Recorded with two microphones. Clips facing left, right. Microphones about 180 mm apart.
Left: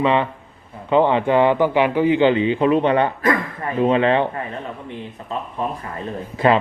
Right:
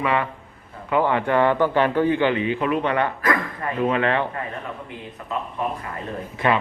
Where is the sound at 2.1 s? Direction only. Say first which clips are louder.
Left 5 dB; 25° left (ahead or behind).